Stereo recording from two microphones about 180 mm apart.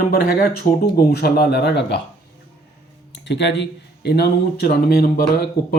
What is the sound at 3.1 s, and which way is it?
Speech, 75° left (ahead or behind).